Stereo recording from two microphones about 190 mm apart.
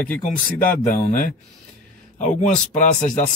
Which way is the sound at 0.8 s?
40° left (ahead or behind).